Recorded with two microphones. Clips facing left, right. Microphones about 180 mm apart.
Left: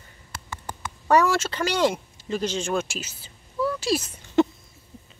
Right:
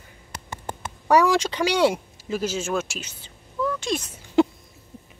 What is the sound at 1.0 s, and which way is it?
Speech, 10° right (ahead or behind).